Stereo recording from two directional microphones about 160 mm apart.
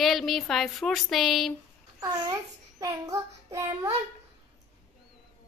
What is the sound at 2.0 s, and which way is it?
Child singing, 20° right (ahead or behind).